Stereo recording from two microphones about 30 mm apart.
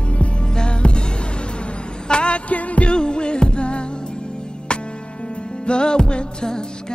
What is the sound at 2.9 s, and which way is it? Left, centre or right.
Music, left.